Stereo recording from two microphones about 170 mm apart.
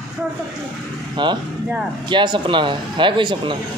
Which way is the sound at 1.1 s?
25° right (ahead or behind).